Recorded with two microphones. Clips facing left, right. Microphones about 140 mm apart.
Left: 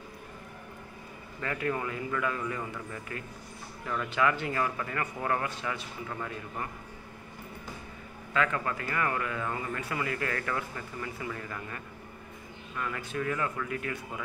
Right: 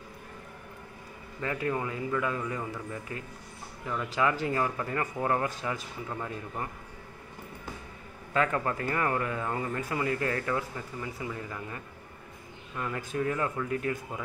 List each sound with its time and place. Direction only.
1.4 s speech: 20° right (ahead or behind)
4.1 s speech: 30° right (ahead or behind)
5.6 s speech: 40° right (ahead or behind)
6.0 s speech: 20° right (ahead or behind)
8.5 s speech: 30° right (ahead or behind)